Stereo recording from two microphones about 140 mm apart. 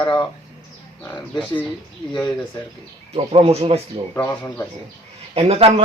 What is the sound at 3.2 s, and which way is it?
Speech, 45° right (ahead or behind).